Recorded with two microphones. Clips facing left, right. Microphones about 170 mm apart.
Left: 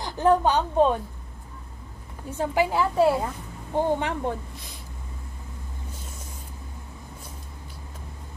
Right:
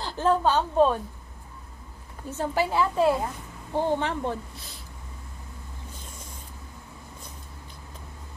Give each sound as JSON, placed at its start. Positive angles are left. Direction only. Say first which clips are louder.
{"t": 0.0, "sound": "a woman's voice", "louder": "left 3 dB", "side_deg": 15}
{"t": 2.2, "sound": "a woman's voice", "louder": "left 2 dB", "side_deg": 15}